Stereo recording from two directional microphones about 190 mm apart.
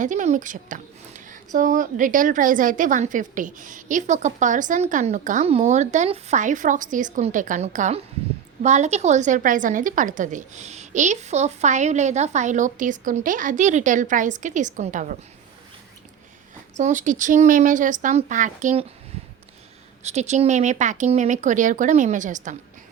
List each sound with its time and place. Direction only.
0.0 s a woman's voice: 40° right (ahead or behind)
16.7 s a woman's voice: 40° right (ahead or behind)
20.0 s a woman's voice: 35° right (ahead or behind)